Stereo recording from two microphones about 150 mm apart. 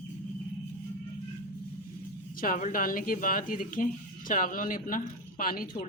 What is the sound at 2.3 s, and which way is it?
Speech, 65° left (ahead or behind).